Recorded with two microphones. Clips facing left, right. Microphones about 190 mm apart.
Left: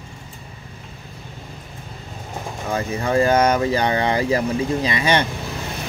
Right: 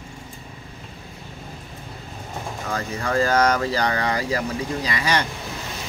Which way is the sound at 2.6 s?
20° left (ahead or behind).